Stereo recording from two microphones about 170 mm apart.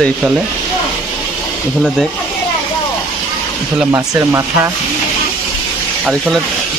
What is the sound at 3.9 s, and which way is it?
Speech, 20° right (ahead or behind).